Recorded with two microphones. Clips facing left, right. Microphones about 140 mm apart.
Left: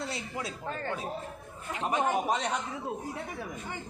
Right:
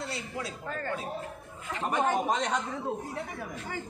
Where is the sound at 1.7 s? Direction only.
10° left (ahead or behind).